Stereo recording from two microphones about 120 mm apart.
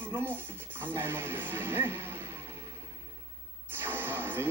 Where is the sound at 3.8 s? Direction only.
20° right (ahead or behind).